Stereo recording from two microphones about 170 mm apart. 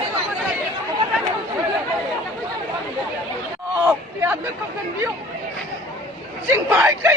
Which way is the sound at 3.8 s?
15° right (ahead or behind).